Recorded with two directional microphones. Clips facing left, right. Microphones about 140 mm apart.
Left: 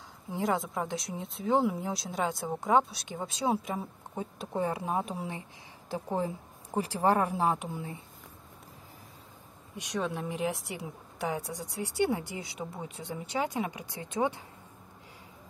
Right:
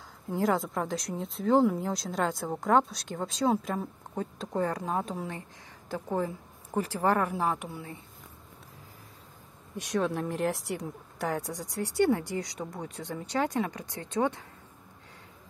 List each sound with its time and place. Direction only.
0.3 s a woman's voice: centre (ahead or behind); by 8.0 s 20° left (ahead or behind)
9.8 s a woman's voice: centre (ahead or behind)